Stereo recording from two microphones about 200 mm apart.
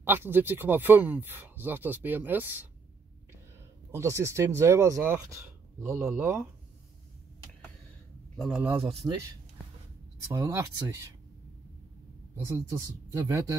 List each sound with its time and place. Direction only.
0.0 s speech: 10° right (ahead or behind)
3.9 s speech: 15° right (ahead or behind)
8.4 s a man's voice: 5° right (ahead or behind)
10.2 s speech: 15° right (ahead or behind)
12.4 s speech: 15° right (ahead or behind)